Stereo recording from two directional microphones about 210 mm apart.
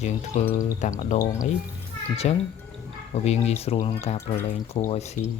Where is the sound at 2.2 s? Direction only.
30° left (ahead or behind).